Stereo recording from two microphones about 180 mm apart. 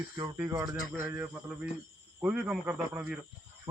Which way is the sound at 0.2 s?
15° right (ahead or behind).